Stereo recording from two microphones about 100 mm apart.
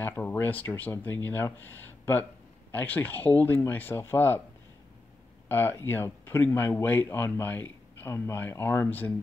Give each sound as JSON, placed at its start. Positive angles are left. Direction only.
{"t": 0.0, "sound": "speech", "side_deg": 20}
{"t": 5.5, "sound": "speech", "side_deg": 20}